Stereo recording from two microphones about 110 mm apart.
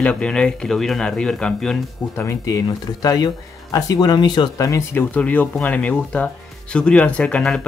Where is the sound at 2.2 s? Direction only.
25° left (ahead or behind).